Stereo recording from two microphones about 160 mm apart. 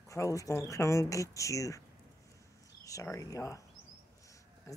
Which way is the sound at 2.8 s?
20° left (ahead or behind).